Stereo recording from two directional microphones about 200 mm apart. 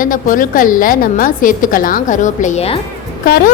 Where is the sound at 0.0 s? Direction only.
45° left (ahead or behind).